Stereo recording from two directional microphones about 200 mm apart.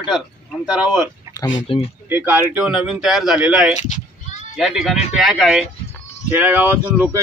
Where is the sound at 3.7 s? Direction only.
35° left (ahead or behind).